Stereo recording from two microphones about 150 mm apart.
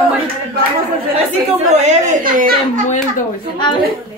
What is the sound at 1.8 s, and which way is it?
Speech, 50° right (ahead or behind).